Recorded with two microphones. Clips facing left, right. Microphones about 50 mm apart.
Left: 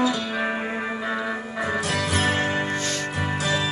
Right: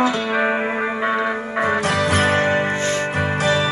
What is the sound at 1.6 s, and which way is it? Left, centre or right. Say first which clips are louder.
Music: right 7 dB; right.